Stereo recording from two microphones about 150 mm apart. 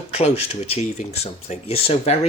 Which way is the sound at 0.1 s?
45° left (ahead or behind).